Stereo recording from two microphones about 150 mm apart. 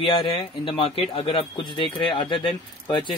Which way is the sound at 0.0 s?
35° left (ahead or behind).